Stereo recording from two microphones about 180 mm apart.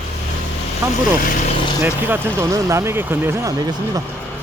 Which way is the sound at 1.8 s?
10° right (ahead or behind).